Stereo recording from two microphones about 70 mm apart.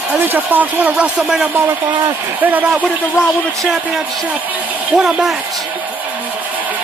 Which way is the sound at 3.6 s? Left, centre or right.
Centre.